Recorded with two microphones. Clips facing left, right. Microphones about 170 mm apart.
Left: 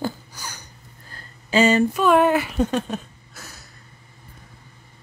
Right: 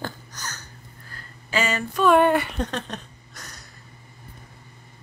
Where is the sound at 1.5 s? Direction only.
30° left (ahead or behind).